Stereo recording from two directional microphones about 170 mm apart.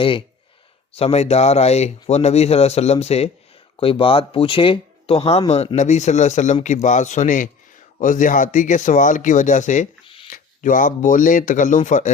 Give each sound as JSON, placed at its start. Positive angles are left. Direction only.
{"t": 0.9, "sound": "speech", "side_deg": 35}